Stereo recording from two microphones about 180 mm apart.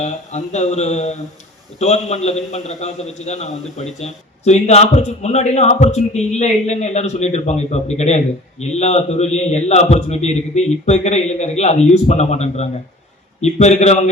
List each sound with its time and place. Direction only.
0.0 s speech: 40° left (ahead or behind)